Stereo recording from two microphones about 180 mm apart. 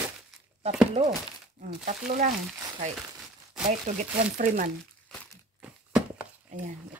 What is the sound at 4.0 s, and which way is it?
Speech, 45° right (ahead or behind).